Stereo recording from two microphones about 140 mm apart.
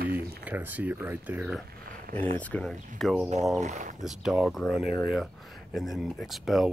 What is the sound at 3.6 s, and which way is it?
Speech, 60° right (ahead or behind).